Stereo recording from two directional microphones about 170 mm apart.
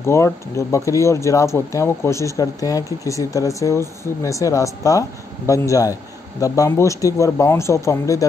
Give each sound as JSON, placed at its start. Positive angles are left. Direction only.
{"t": 0.0, "sound": "speech", "side_deg": 15}